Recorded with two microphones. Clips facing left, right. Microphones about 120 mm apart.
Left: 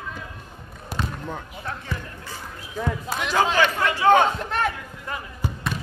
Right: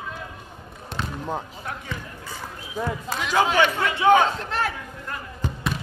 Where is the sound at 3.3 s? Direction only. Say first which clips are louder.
Right 1 dB; 15° right (ahead or behind).